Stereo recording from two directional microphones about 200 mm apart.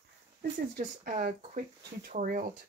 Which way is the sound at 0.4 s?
45° right (ahead or behind).